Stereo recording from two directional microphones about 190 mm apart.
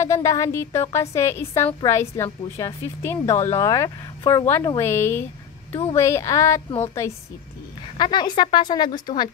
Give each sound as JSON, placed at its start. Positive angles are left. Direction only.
{"t": 0.0, "sound": "a woman's voice", "side_deg": 15}
{"t": 8.0, "sound": "speech", "side_deg": 25}